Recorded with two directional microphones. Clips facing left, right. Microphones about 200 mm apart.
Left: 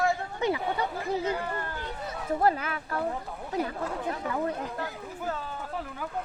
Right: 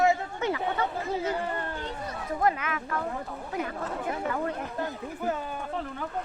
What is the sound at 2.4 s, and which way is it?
Speech, 35° left (ahead or behind).